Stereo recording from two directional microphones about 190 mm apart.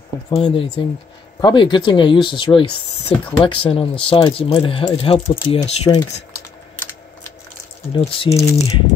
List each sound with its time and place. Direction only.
0.3 s speech: 25° left (ahead or behind)
7.9 s speech: 30° left (ahead or behind)